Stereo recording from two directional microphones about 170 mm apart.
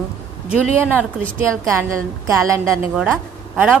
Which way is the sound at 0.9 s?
15° right (ahead or behind).